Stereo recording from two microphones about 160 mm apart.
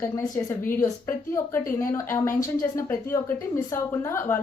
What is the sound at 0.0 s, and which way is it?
Speech, 15° left (ahead or behind).